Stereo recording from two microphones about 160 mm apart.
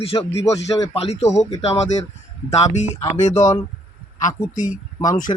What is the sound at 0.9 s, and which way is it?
Speech, 40° left (ahead or behind).